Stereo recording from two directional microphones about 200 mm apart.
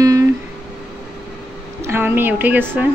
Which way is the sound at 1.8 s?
10° right (ahead or behind).